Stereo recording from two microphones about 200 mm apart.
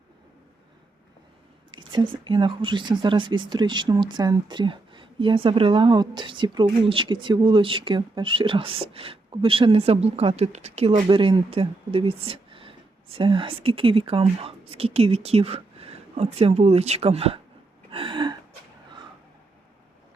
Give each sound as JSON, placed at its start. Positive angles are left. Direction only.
{"t": 1.7, "sound": "a sound", "side_deg": -25}
{"t": 2.2, "sound": "speech", "side_deg": -25}
{"t": 17.9, "sound": "gasp", "side_deg": -25}